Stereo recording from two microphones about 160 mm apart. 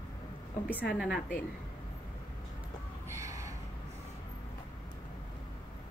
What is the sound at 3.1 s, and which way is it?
Gasp, 20° right (ahead or behind).